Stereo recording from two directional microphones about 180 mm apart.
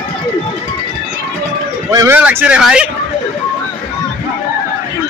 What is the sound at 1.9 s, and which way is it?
Speech, 20° right (ahead or behind).